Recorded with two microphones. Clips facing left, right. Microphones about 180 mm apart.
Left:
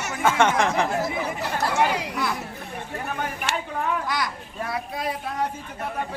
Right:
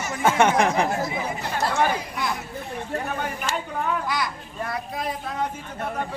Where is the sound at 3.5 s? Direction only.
70° left (ahead or behind).